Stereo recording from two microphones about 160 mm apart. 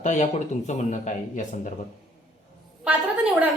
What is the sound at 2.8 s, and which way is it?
Speech, 5° right (ahead or behind).